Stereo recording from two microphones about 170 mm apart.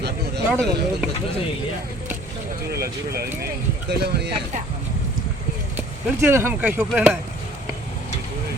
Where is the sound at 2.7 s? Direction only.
65° right (ahead or behind).